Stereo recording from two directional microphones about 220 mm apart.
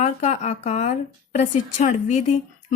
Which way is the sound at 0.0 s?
30° left (ahead or behind).